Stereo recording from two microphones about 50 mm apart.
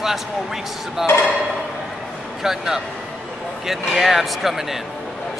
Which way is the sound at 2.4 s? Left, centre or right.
Centre.